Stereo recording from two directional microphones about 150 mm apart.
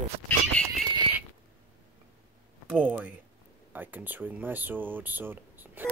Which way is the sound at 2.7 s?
10° right (ahead or behind).